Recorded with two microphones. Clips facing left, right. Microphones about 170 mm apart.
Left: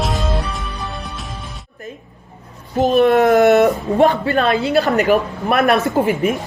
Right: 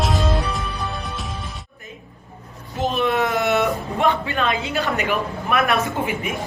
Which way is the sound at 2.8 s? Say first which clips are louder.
Left 8 dB; 45° left (ahead or behind).